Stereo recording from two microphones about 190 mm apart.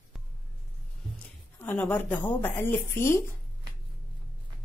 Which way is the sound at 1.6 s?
10° left (ahead or behind).